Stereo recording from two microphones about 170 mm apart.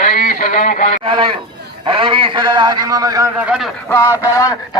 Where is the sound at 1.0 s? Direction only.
30° right (ahead or behind).